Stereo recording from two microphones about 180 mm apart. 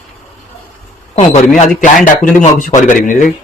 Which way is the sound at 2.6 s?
45° left (ahead or behind).